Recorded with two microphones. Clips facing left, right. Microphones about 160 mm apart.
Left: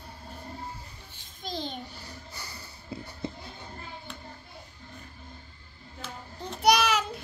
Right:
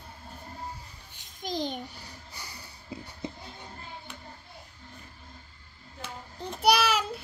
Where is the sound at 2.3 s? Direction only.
15° right (ahead or behind).